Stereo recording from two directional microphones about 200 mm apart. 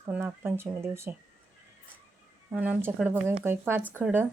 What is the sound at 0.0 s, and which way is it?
Speech, 10° right (ahead or behind).